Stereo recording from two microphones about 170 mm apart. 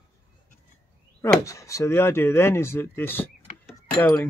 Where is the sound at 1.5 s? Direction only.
20° left (ahead or behind).